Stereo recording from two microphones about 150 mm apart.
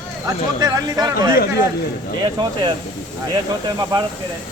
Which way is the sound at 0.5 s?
25° right (ahead or behind).